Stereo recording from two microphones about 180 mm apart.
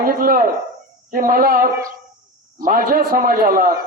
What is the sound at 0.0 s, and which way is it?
A man's voice, 50° right (ahead or behind).